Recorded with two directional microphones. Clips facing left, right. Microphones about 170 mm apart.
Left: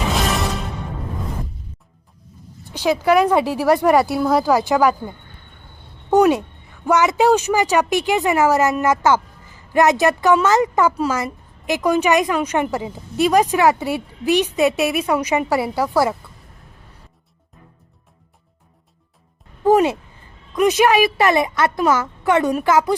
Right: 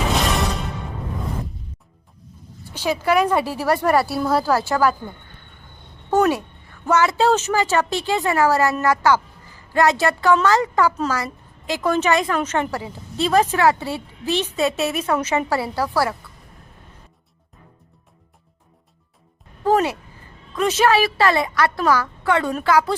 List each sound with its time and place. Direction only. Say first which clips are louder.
2.7 s a woman's voice: left 3 dB; 15° left (ahead or behind)
6.1 s a woman's voice: left 4 dB; 15° left (ahead or behind)
19.6 s a woman's voice: left 4 dB; 20° left (ahead or behind)